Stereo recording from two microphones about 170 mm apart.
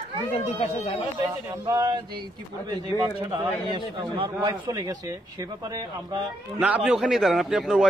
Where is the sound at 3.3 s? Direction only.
30° right (ahead or behind).